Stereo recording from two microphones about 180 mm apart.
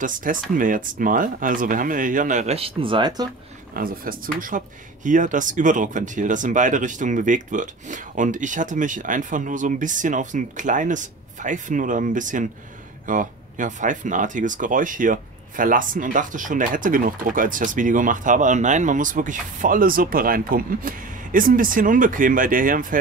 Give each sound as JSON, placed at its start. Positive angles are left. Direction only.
{"t": 0.0, "sound": "speech", "side_deg": -50}
{"t": 3.7, "sound": "speech", "side_deg": -50}